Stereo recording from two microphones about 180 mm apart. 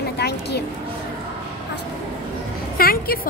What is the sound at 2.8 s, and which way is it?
Speech, 55° left (ahead or behind).